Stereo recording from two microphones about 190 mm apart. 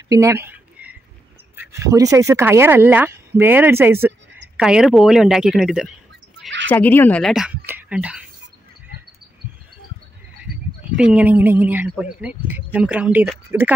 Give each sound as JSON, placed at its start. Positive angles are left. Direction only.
{"t": 0.1, "sound": "a sound", "side_deg": -15}
{"t": 1.6, "sound": "speech", "side_deg": -15}
{"t": 6.7, "sound": "speech", "side_deg": 10}
{"t": 11.0, "sound": "speech", "side_deg": -5}